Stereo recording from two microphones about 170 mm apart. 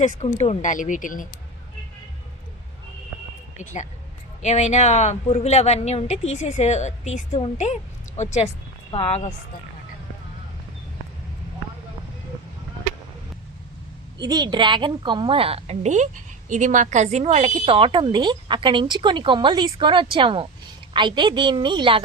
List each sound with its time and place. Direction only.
0.0 s speech: 45° left (ahead or behind)
3.6 s a woman's voice: 45° left (ahead or behind)
14.2 s speech: 25° right (ahead or behind)